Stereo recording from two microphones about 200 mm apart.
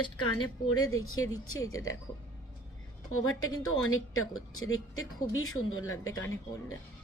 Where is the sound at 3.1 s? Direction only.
90° left.